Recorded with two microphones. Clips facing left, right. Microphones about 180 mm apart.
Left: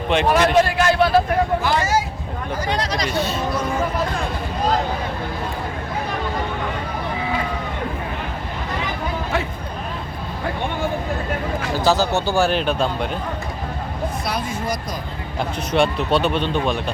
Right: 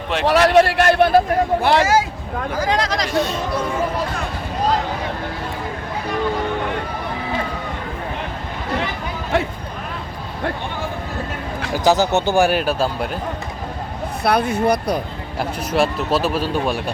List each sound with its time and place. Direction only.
0.3 s a man's voice: 70° right (ahead or behind); by 1.2 s 55° right (ahead or behind)
1.6 s speech: 80° right
3.1 s speech: centre (ahead or behind)
11.8 s speech: 20° right (ahead or behind)
14.3 s a man's voice: 60° right (ahead or behind)
15.4 s speech: 5° right (ahead or behind)